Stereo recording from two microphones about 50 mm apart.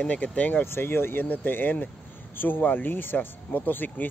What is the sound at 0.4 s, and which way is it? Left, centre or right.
Speech, left.